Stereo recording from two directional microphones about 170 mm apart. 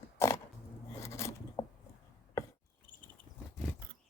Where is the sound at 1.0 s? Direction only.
15° left (ahead or behind).